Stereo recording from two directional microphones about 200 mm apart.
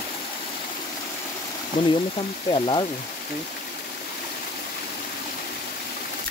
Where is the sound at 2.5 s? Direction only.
25° left (ahead or behind).